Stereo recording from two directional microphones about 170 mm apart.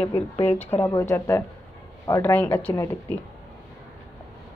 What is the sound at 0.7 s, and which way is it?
Speech, 20° left (ahead or behind).